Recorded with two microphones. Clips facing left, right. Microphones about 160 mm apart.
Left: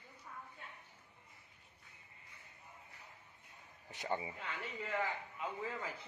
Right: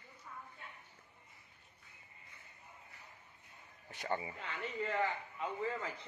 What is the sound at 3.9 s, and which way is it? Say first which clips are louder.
Speech: right 1 dB; 15° left (ahead or behind).